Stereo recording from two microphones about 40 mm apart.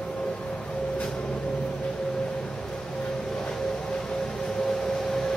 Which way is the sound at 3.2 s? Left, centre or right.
Centre.